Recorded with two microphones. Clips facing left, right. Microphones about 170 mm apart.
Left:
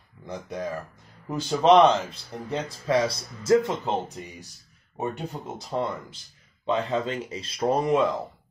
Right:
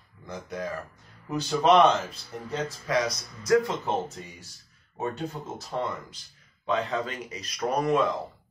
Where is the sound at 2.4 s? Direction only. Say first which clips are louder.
Left 3 dB; 30° left (ahead or behind).